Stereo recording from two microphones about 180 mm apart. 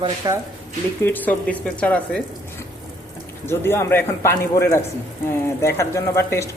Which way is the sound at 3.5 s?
15° left (ahead or behind).